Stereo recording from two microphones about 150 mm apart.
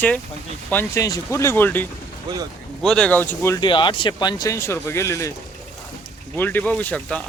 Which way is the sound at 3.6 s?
30° left (ahead or behind).